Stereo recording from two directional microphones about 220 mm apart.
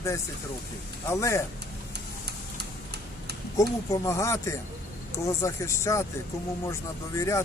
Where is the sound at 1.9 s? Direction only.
50° right (ahead or behind).